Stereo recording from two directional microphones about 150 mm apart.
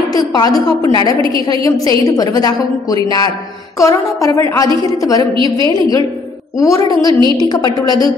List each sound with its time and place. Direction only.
0.1 s a woman's voice: 25° left (ahead or behind)